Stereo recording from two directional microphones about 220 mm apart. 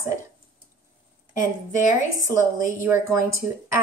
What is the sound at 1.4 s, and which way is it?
Speech, 35° left (ahead or behind).